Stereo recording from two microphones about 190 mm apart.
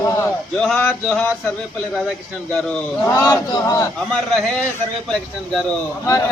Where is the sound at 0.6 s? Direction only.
5° left (ahead or behind).